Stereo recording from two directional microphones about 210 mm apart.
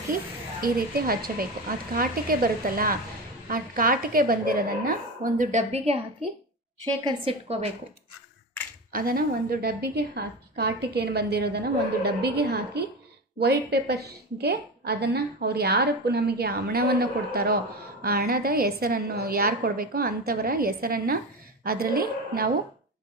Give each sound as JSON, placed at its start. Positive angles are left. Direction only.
{"t": 0.1, "sound": "a woman's voice", "side_deg": -45}
{"t": 7.1, "sound": "a woman's voice", "side_deg": -30}
{"t": 8.9, "sound": "a woman's voice", "side_deg": -45}